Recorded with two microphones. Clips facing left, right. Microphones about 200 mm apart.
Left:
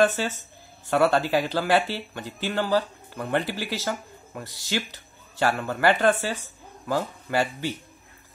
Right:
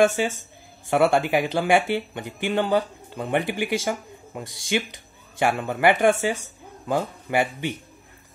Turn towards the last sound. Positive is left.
turn(degrees=-15)  # may be behind; listen again after turning